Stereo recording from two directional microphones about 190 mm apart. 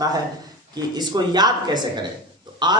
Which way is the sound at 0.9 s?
20° right (ahead or behind).